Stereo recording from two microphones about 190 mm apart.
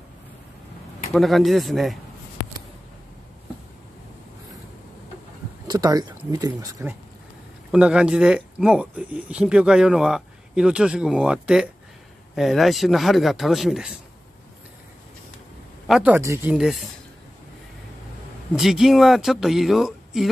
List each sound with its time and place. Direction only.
1.1 s speech: centre (ahead or behind)
5.7 s speech: 20° right (ahead or behind); by 13.9 s centre (ahead or behind)
15.9 s speech: 5° right (ahead or behind)
18.5 s speech: centre (ahead or behind)